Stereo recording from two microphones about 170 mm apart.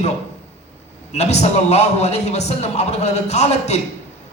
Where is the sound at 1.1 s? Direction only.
40° left (ahead or behind).